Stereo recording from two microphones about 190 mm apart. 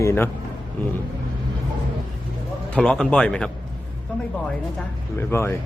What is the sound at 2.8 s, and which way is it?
Speech, 5° left (ahead or behind).